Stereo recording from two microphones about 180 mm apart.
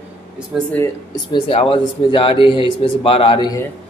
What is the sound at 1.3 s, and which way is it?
Speech, 30° left (ahead or behind).